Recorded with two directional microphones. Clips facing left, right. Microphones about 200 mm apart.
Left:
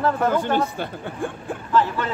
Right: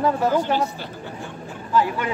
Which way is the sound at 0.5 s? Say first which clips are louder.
Left 1 dB; 55° left (ahead or behind).